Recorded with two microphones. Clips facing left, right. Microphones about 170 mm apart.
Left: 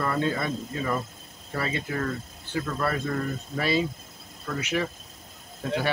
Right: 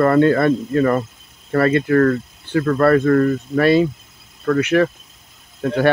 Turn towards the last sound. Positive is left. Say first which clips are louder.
# right 7 dB
turn(degrees=-65)  # may be behind; listen again after turning